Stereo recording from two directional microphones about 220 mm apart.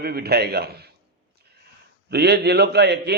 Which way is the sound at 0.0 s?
45° right (ahead or behind).